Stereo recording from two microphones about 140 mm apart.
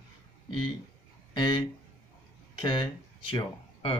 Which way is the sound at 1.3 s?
35° left (ahead or behind).